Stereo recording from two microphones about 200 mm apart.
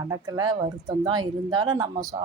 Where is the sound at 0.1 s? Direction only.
20° right (ahead or behind).